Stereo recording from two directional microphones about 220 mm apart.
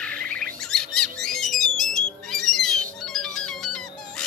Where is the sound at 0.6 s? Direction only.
5° left (ahead or behind).